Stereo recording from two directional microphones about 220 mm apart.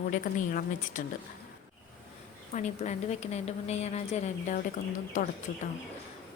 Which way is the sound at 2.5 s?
30° left (ahead or behind).